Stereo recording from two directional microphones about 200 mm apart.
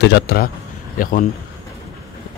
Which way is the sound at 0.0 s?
55° left (ahead or behind).